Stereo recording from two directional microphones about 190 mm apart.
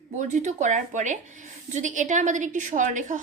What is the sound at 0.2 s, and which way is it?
A woman's voice, 40° right (ahead or behind).